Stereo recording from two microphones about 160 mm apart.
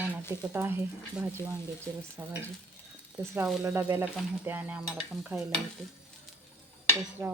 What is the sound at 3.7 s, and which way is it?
Speech, 15° right (ahead or behind).